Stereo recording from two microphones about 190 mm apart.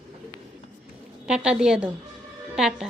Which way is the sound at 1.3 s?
5° right (ahead or behind).